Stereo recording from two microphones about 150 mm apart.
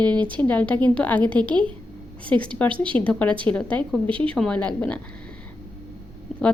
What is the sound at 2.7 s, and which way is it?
Speech, 35° right (ahead or behind).